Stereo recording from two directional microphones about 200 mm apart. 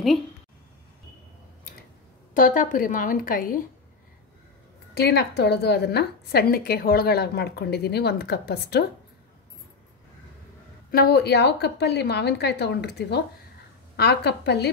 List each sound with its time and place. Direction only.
2.3 s a woman's voice: 40° left (ahead or behind)
4.9 s a woman's voice: 55° left (ahead or behind)
10.9 s a woman's voice: 50° left (ahead or behind)